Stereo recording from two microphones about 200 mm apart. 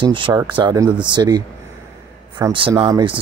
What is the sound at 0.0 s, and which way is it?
Speech, 25° right (ahead or behind).